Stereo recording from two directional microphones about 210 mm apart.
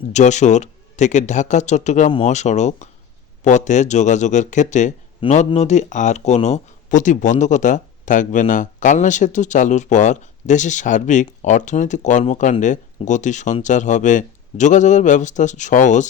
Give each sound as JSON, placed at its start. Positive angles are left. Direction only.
{"t": 0.1, "sound": "speech", "side_deg": 35}